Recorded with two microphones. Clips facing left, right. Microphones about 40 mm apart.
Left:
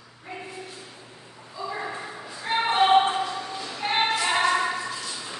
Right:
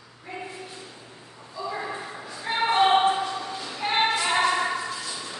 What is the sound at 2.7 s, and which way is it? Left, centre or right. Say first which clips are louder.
Basketball bounce: left 1 dB; centre.